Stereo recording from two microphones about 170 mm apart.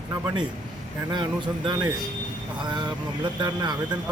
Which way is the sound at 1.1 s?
25° right (ahead or behind).